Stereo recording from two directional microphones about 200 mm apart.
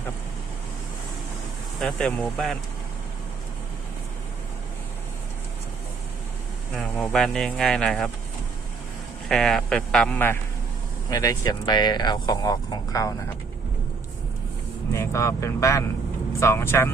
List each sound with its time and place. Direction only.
1.8 s speech: 5° left (ahead or behind)
6.7 s speech: 5° left (ahead or behind)
9.3 s speech: centre (ahead or behind)
14.9 s speech: 15° left (ahead or behind)